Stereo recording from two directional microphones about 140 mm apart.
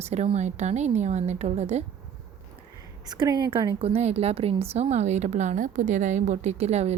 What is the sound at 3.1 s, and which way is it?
Speech, 30° right (ahead or behind).